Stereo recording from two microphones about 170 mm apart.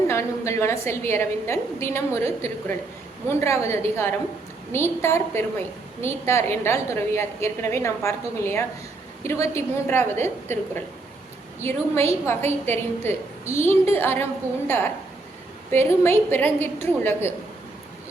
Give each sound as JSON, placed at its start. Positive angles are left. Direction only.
{"t": 0.1, "sound": "a woman's voice", "side_deg": 15}
{"t": 11.6, "sound": "a woman's voice", "side_deg": 15}
{"t": 15.7, "sound": "a woman's voice", "side_deg": 15}